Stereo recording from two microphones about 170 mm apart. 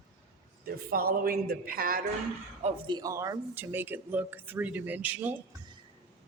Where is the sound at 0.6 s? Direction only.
60° right (ahead or behind).